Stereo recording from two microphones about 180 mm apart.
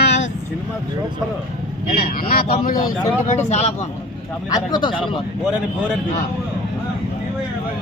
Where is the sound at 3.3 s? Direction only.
40° left (ahead or behind).